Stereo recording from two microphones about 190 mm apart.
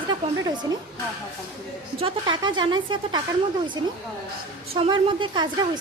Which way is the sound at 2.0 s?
25° right (ahead or behind).